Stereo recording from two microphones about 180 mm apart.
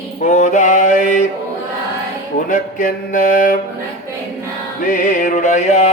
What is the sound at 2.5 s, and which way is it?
Music, 45° left (ahead or behind).